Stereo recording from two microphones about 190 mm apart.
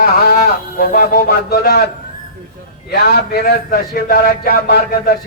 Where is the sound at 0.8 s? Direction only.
55° left (ahead or behind).